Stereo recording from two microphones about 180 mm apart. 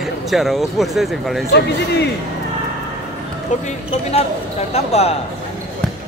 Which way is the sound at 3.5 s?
45° left (ahead or behind).